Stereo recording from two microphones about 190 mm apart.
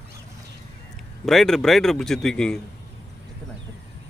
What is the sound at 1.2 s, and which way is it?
Speech, centre (ahead or behind).